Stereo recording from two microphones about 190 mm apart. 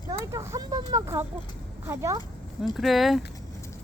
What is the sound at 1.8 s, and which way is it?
Speech, 15° right (ahead or behind).